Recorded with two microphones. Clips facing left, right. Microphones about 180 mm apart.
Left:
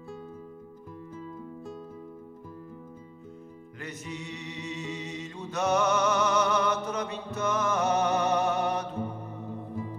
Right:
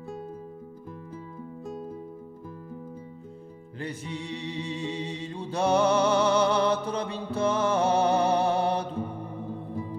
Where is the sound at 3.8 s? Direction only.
30° right (ahead or behind).